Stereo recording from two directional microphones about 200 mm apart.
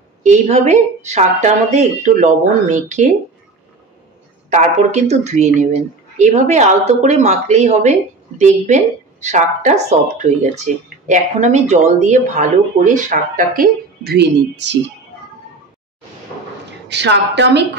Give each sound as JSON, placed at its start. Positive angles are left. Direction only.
{"t": 0.2, "sound": "speech", "side_deg": -35}
{"t": 4.5, "sound": "speech", "side_deg": -35}
{"t": 16.9, "sound": "a woman's voice", "side_deg": -60}